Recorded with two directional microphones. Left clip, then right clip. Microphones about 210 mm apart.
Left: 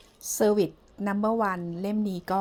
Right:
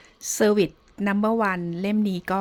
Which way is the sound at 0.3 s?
30° right (ahead or behind).